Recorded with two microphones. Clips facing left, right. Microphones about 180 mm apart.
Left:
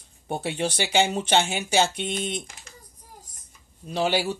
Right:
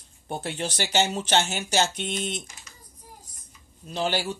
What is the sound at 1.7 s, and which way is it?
Speech, centre (ahead or behind).